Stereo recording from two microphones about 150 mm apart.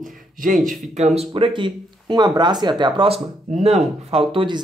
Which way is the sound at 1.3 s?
35° right (ahead or behind).